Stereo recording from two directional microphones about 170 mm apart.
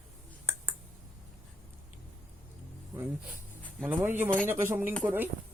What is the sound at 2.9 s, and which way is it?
Music, 10° right (ahead or behind).